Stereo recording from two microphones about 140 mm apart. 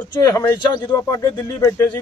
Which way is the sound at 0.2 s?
25° left (ahead or behind).